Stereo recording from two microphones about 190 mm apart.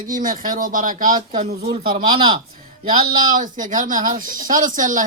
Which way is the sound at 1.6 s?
30° right (ahead or behind).